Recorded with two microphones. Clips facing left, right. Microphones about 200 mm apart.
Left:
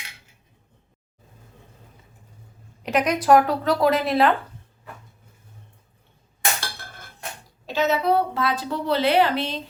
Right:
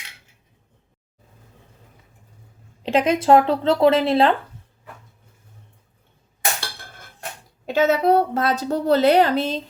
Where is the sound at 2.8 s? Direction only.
25° right (ahead or behind).